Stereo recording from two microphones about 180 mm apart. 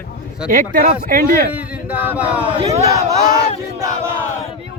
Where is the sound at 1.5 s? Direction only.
10° right (ahead or behind).